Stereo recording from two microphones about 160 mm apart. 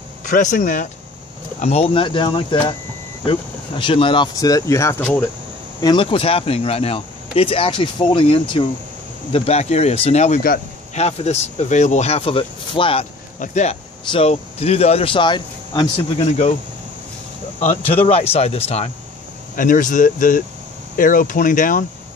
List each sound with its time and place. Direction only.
0.2 s speech: 50° left (ahead or behind)
1.6 s speech: 40° left (ahead or behind); by 5.2 s 15° left (ahead or behind)
5.8 s speech: 30° left (ahead or behind)
13.4 s speech: 45° left (ahead or behind); by 15.9 s 25° left (ahead or behind)
16.2 s speech: 40° left (ahead or behind)
17.6 s speech: 35° left (ahead or behind)
19.5 s speech: 55° left (ahead or behind)